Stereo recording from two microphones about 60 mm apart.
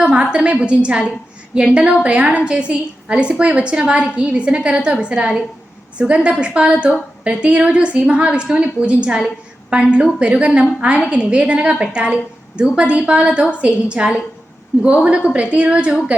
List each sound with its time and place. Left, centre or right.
0.0 s a woman's voice: centre